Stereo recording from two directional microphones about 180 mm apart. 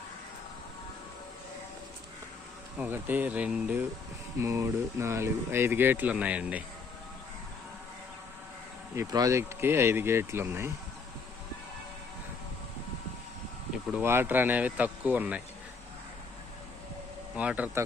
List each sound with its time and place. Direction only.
2.7 s speech: 10° right (ahead or behind)
9.0 s speech: 20° right (ahead or behind)
13.9 s speech: 15° right (ahead or behind)
17.3 s speech: 10° right (ahead or behind)